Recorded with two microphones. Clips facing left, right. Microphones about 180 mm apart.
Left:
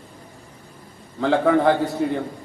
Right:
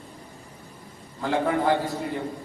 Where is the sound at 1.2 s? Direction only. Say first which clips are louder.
Left 6 dB; 80° left.